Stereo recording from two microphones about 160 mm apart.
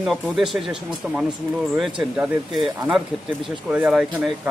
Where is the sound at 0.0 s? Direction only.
Centre (ahead or behind).